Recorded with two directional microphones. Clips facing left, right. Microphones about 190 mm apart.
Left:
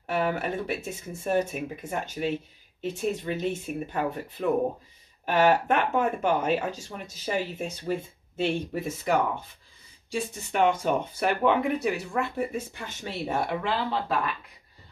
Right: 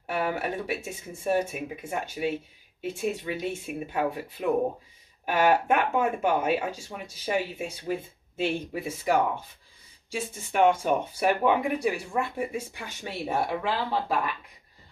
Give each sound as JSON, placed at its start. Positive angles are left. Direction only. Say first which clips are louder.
{"t": 0.0, "sound": "speech", "louder": "left 1 dB", "side_deg": -10}
{"t": 10.1, "sound": "speech", "louder": "even", "side_deg": -5}